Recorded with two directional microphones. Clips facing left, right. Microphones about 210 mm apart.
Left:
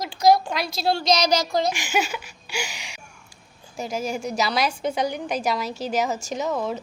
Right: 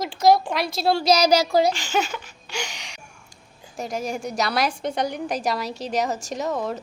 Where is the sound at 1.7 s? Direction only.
10° left (ahead or behind).